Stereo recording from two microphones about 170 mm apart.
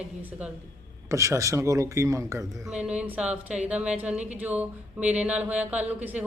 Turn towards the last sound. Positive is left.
turn(degrees=-10)  # may be behind; listen again after turning